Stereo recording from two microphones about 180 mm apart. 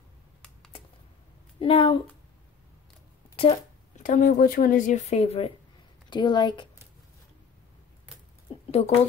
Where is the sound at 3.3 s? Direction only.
30° left (ahead or behind).